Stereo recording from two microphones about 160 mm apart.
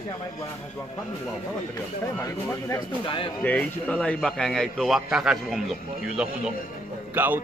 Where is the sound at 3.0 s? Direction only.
30° left (ahead or behind).